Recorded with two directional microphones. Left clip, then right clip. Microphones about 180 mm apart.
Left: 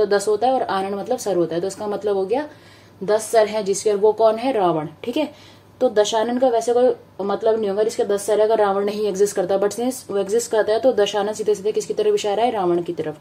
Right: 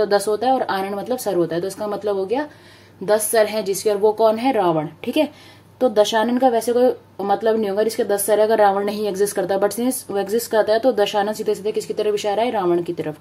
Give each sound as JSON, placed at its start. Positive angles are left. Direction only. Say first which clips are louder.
{"t": 0.0, "sound": "a woman's voice", "louder": "even", "side_deg": -20}
{"t": 3.1, "sound": "a woman's voice", "louder": "even", "side_deg": -35}